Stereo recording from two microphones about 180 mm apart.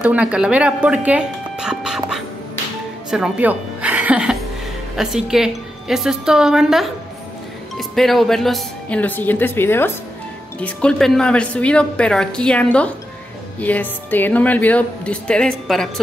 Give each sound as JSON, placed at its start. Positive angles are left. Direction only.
{"t": 0.0, "sound": "speech", "side_deg": -5}
{"t": 3.1, "sound": "music", "side_deg": -5}
{"t": 4.9, "sound": "a woman's voice", "side_deg": 0}